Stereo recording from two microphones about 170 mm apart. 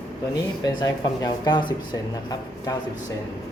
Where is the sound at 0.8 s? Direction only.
25° left (ahead or behind).